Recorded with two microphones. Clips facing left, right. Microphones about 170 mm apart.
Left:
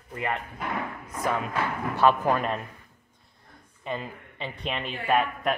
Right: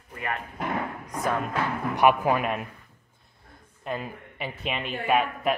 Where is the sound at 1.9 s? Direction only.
10° right (ahead or behind).